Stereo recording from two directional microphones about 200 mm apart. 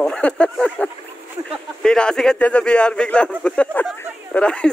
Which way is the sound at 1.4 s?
20° right (ahead or behind).